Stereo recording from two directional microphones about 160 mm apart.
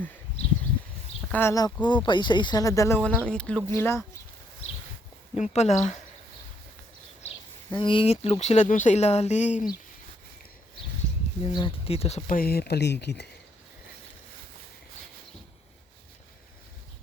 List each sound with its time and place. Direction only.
1.3 s speech: 15° left (ahead or behind)
3.0 s speech: 5° left (ahead or behind)
3.7 s speech: 15° left (ahead or behind)
5.3 s speech: 45° left (ahead or behind)
7.7 s speech: 30° left (ahead or behind); by 9.6 s 45° left (ahead or behind)
11.4 s speech: 35° left (ahead or behind)
12.3 s speech: 70° left (ahead or behind); by 13.2 s 90° left